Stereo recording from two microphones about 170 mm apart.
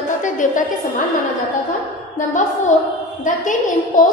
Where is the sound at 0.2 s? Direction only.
50° left (ahead or behind).